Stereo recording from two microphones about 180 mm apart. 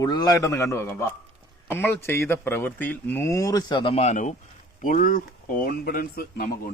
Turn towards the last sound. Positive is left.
turn(degrees=55)  # may be behind; listen again after turning